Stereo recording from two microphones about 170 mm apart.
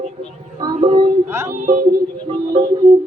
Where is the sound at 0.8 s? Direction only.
30° right (ahead or behind).